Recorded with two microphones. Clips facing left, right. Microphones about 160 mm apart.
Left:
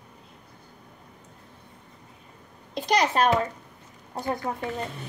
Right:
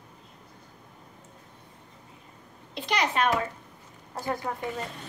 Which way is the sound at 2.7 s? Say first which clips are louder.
Left 4 dB; 40° left (ahead or behind).